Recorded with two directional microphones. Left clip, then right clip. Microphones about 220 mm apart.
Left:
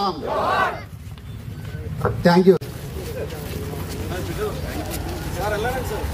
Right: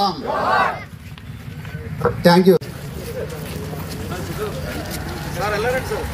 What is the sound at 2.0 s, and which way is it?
Speech, 35° right (ahead or behind).